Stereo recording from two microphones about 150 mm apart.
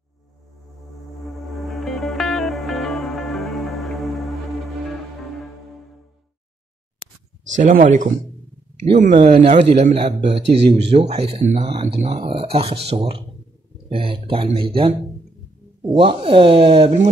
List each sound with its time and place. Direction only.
1.2 s music: centre (ahead or behind)
7.5 s speech: 60° right (ahead or behind)
12.1 s speech: 35° right (ahead or behind)